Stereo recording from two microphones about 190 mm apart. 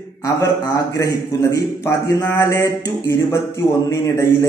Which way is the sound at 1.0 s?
15° left (ahead or behind).